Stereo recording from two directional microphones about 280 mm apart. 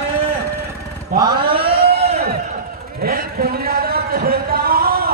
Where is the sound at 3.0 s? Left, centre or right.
Right.